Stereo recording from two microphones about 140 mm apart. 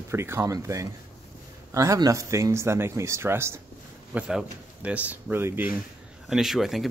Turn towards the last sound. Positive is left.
turn(degrees=0)  # may be behind; listen again after turning